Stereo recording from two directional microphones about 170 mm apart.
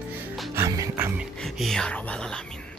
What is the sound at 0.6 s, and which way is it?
Music, 15° right (ahead or behind).